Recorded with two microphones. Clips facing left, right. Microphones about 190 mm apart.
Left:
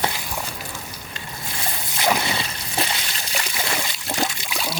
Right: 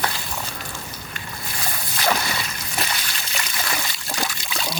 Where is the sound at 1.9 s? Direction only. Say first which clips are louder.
Left 1 dB; 20° left (ahead or behind).